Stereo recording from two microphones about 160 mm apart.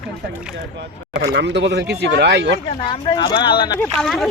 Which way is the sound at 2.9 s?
30° left (ahead or behind).